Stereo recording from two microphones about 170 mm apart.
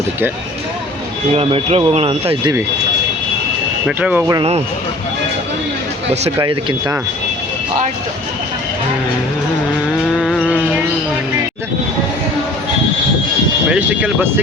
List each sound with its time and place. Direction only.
1.3 s speech: 35° right (ahead or behind)
3.8 s speech: 5° right (ahead or behind)
6.4 s speech: 25° right (ahead or behind)
10.2 s a sound: centre (ahead or behind)
13.7 s speech: 10° right (ahead or behind)